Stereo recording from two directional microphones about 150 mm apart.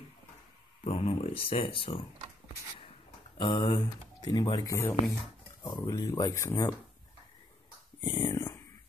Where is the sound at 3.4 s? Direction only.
30° left (ahead or behind).